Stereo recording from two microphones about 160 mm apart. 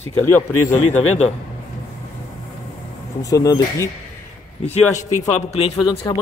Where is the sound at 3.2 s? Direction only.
20° left (ahead or behind).